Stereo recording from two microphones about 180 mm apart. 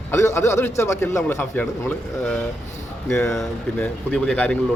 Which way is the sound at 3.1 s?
5° left (ahead or behind).